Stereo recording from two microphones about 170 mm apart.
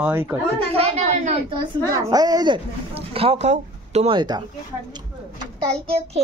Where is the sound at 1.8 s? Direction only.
20° right (ahead or behind).